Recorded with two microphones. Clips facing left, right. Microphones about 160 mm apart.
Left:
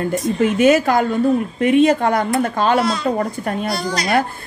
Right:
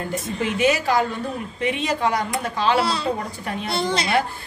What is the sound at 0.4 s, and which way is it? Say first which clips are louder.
Speech: left 7 dB; 50° left (ahead or behind).